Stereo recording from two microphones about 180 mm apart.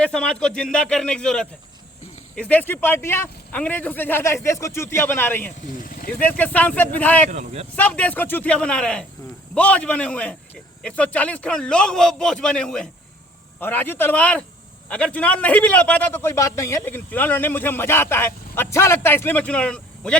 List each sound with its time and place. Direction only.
0.0 s a man's voice: 5° left (ahead or behind)
5.8 s a sound: 50° left (ahead or behind)
6.1 s a man's voice: 10° left (ahead or behind)
7.3 s speech: 35° right (ahead or behind)
7.8 s a man's voice: 10° left (ahead or behind)